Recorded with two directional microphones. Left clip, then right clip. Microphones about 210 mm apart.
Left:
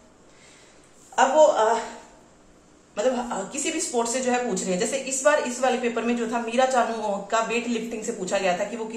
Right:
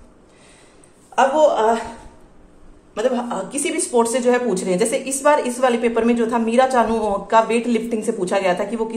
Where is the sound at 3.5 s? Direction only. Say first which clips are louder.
Right 7 dB; 50° right (ahead or behind).